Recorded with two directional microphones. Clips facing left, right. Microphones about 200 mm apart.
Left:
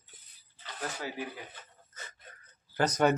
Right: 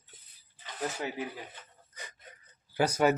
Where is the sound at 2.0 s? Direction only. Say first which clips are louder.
Right 2 dB; 15° right (ahead or behind).